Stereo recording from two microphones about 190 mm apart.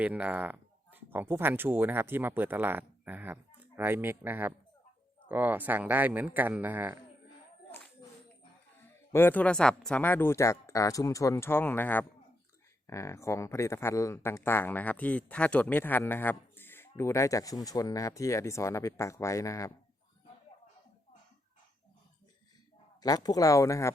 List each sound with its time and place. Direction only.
0.0 s speech: 5° right (ahead or behind)
9.1 s speech: 10° left (ahead or behind)
23.0 s speech: 20° left (ahead or behind)